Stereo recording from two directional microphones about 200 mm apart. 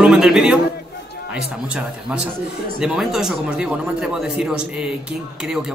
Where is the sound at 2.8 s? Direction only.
Centre (ahead or behind).